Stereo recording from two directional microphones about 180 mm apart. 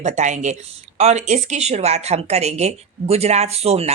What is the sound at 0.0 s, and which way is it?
Speech, 40° right (ahead or behind).